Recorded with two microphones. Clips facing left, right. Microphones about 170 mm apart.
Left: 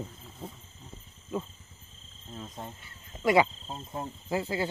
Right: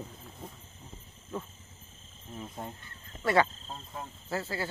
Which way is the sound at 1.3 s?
10° left (ahead or behind).